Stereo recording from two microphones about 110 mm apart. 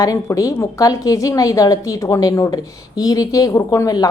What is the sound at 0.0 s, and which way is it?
A woman's voice, 30° left (ahead or behind).